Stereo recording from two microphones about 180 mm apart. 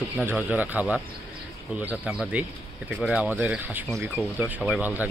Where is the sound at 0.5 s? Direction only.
10° right (ahead or behind).